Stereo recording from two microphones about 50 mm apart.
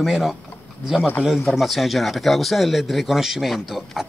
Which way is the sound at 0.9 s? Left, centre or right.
Left.